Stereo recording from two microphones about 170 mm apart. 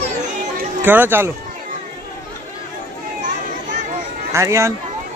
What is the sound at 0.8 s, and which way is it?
Speech, 10° right (ahead or behind).